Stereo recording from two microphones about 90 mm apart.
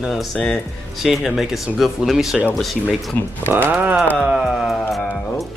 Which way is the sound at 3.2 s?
25° left (ahead or behind).